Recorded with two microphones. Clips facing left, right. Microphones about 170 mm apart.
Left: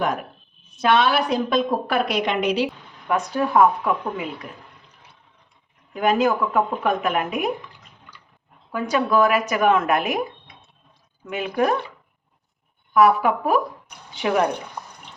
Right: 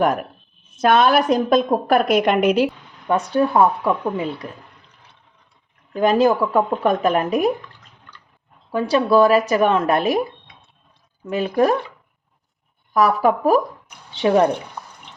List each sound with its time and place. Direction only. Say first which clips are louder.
0.0 s a woman's voice: right 5 dB; 50° right (ahead or behind)
3.2 s speech: right 1 dB; 30° right (ahead or behind)
5.9 s speech: right 4 dB; 35° right (ahead or behind)
8.7 s speech: right 5 dB; 30° right (ahead or behind)
11.3 s speech: right 4 dB; 35° right (ahead or behind)
12.9 s speech: even; 40° right (ahead or behind)